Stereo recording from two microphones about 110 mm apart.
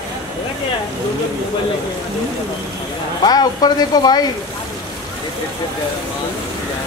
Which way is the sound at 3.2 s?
40° left (ahead or behind).